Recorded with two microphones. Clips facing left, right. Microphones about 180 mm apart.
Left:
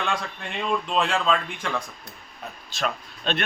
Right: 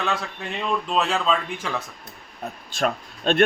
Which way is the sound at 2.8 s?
45° right (ahead or behind).